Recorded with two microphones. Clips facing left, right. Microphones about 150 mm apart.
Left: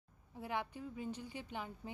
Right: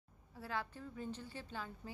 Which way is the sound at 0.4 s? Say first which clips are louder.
Left 2 dB; 20° left (ahead or behind).